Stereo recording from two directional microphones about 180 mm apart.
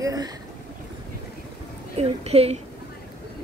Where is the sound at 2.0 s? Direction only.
35° right (ahead or behind).